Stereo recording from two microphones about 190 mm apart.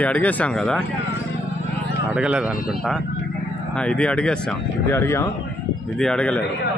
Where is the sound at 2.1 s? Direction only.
5° right (ahead or behind).